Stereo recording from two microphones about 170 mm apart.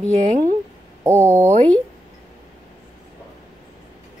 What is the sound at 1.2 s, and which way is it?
Speech, 15° right (ahead or behind).